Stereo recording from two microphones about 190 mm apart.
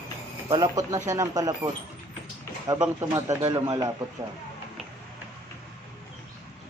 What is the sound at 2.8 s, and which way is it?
Speech, 15° right (ahead or behind).